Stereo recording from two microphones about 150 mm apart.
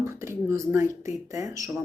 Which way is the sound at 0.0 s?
20° right (ahead or behind).